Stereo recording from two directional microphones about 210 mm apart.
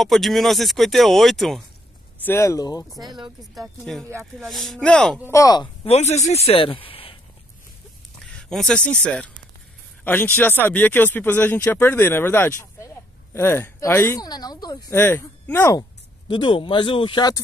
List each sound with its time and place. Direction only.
0.0 s speech: centre (ahead or behind)
2.2 s speech: 15° left (ahead or behind)
3.0 s speech: 20° right (ahead or behind)
3.5 s speech: centre (ahead or behind)
4.0 s speech: 10° right (ahead or behind)
4.4 s speech: centre (ahead or behind)
5.3 s a man's voice: 15° left (ahead or behind)
5.9 s a man's voice: 30° left (ahead or behind)
8.2 s speech: 5° left (ahead or behind)
16.3 s a man's voice: 25° left (ahead or behind)